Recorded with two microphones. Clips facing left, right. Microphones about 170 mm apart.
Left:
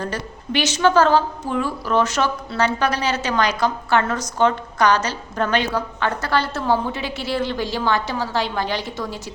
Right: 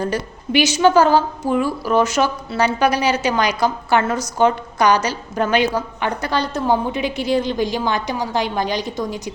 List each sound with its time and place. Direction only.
0.0 s a woman's voice: 10° right (ahead or behind)